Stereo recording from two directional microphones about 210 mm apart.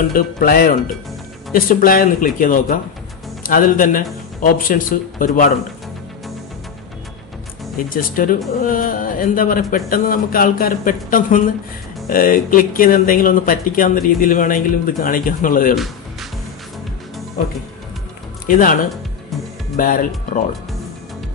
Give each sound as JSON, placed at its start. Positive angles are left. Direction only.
{"t": 0.1, "sound": "speech", "side_deg": 40}
{"t": 7.7, "sound": "speech", "side_deg": 40}
{"t": 15.7, "sound": "music", "side_deg": 0}
{"t": 18.5, "sound": "speech", "side_deg": 40}
{"t": 19.8, "sound": "speech", "side_deg": 40}